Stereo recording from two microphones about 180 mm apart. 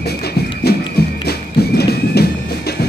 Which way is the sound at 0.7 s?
60° left (ahead or behind).